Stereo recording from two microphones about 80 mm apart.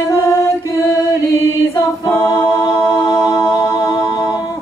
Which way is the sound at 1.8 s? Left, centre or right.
Left.